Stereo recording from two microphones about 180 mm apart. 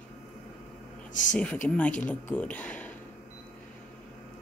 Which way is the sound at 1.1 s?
45° left (ahead or behind).